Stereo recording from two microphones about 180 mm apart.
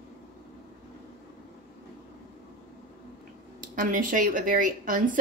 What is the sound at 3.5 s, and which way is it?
Speech, 50° right (ahead or behind).